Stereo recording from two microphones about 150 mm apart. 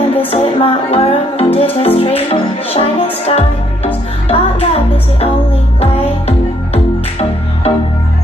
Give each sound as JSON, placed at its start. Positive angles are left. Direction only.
{"t": 0.3, "sound": "music", "side_deg": 40}